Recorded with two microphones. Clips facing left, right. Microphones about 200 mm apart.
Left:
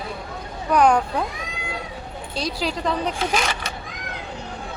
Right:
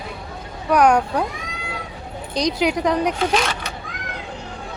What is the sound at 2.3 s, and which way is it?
Speech, 20° right (ahead or behind).